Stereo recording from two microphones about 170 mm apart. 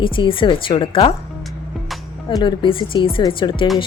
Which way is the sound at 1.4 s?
Centre (ahead or behind).